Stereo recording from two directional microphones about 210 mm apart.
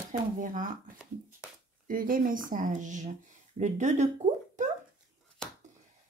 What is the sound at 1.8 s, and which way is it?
Speech, 40° right (ahead or behind).